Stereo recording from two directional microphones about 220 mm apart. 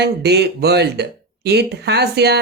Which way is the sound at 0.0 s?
50° right (ahead or behind).